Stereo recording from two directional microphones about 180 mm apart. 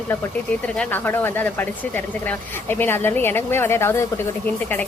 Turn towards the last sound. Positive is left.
turn(degrees=15)  # may be behind; listen again after turning